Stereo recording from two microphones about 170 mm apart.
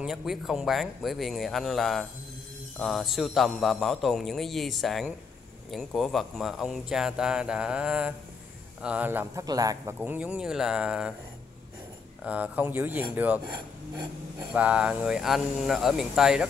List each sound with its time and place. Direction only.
0.0 s speech: centre (ahead or behind); by 9.9 s 20° right (ahead or behind)
9.9 s speech: 10° right (ahead or behind)
12.3 s speech: 10° right (ahead or behind)
14.5 s speech: 5° right (ahead or behind)